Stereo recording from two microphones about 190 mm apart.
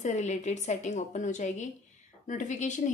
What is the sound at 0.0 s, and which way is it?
A woman's voice, 40° left (ahead or behind).